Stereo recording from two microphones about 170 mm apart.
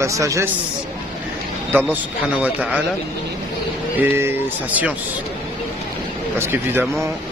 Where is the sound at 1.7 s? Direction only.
10° right (ahead or behind).